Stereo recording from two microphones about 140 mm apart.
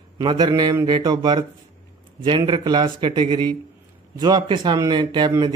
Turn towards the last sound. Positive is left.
turn(degrees=-35)  # may be behind; listen again after turning